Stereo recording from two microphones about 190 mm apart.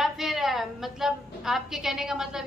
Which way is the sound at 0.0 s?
Centre (ahead or behind).